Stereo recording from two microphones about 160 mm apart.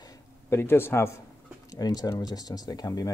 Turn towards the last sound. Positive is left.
turn(degrees=25)  # may be behind; listen again after turning